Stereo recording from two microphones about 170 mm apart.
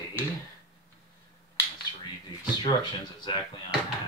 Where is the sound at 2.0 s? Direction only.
25° left (ahead or behind).